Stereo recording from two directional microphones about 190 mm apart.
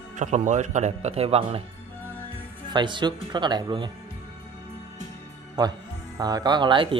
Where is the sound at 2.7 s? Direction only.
25° right (ahead or behind).